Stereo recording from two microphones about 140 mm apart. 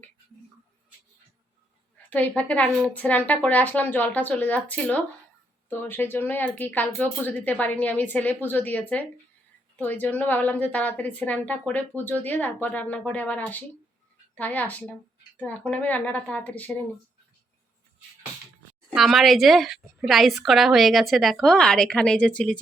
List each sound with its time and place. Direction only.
2.0 s a woman's voice: 10° left (ahead or behind)
18.9 s a woman's voice: centre (ahead or behind)